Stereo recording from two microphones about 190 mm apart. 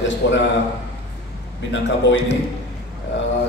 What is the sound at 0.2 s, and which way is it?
Speech, 70° left (ahead or behind).